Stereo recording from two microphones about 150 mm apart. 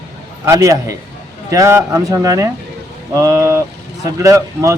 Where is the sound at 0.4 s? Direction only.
20° right (ahead or behind).